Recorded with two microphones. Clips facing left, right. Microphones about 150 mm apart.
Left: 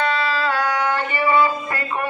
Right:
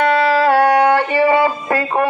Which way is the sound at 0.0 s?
65° right (ahead or behind).